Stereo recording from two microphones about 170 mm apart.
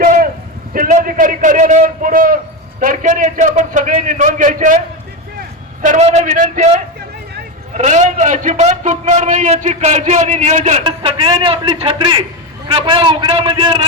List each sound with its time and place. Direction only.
0.0 s a sound: 50° right (ahead or behind)
0.7 s a man's voice: 50° right (ahead or behind)
5.8 s a man's voice: 45° right (ahead or behind)
10.8 s a man's voice: 30° right (ahead or behind)